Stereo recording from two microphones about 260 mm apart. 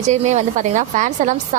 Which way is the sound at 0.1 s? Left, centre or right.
Right.